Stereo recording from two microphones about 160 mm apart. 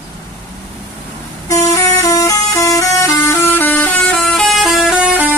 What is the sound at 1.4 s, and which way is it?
Vehicle, 20° left (ahead or behind).